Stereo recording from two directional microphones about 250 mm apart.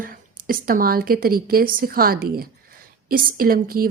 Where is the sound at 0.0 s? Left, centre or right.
Right.